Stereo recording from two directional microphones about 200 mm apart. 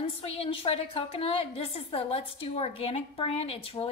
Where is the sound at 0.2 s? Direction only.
30° left (ahead or behind).